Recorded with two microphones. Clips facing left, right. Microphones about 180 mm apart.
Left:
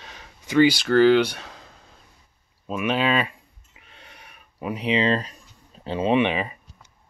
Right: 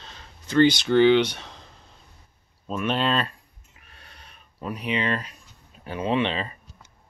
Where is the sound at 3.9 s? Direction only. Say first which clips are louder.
Left 3 dB; 15° left (ahead or behind).